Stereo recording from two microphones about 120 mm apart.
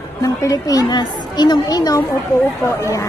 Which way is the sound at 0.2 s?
30° left (ahead or behind).